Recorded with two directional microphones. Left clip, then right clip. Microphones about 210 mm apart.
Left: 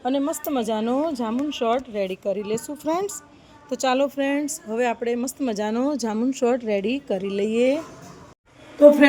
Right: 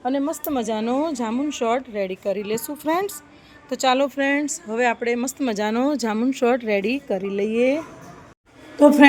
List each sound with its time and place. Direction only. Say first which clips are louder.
0.0 s speech: even; centre (ahead or behind)
8.8 s speech: left 1 dB; 30° right (ahead or behind)